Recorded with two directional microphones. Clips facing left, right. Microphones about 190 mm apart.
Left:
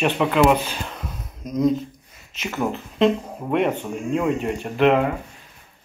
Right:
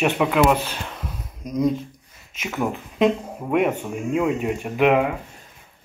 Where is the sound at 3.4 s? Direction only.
5° right (ahead or behind).